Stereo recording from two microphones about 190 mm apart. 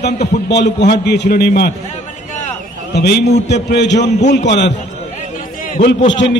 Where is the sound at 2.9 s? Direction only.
60° left (ahead or behind).